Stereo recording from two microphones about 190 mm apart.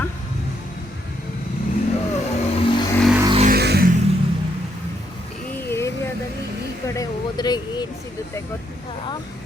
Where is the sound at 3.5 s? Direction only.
60° right (ahead or behind).